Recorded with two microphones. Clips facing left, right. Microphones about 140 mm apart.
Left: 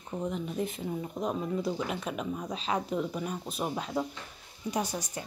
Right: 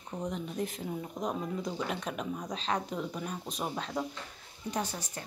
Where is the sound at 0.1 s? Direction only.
5° left (ahead or behind).